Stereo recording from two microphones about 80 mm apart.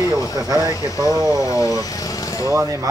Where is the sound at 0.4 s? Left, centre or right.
Right.